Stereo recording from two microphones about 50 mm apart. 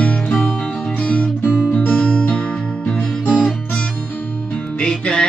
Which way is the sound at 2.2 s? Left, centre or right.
Centre.